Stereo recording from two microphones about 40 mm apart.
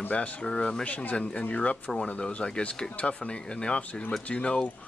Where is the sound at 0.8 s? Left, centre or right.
Left.